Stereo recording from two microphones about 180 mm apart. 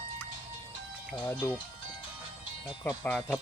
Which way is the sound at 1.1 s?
10° left (ahead or behind).